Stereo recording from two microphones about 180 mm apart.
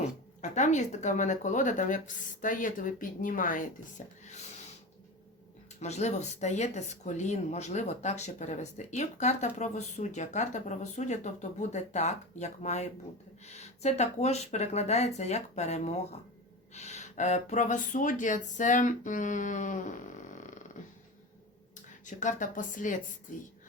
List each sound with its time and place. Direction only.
0.4 s speech: 40° left (ahead or behind)
5.8 s speech: 40° left (ahead or behind)
21.8 s a woman's voice: 45° left (ahead or behind)